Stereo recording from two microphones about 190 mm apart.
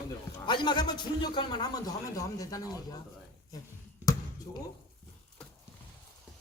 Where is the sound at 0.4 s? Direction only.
25° left (ahead or behind).